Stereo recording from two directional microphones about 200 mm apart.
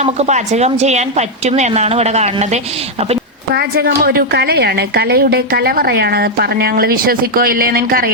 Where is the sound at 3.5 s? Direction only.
50° right (ahead or behind).